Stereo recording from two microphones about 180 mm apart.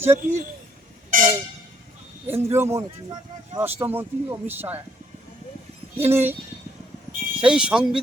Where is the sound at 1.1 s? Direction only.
50° right (ahead or behind).